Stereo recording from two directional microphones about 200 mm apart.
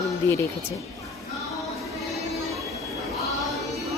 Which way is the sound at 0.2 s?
10° left (ahead or behind).